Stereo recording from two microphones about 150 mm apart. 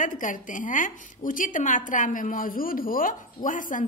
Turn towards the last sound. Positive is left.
turn(degrees=60)  # may be behind; listen again after turning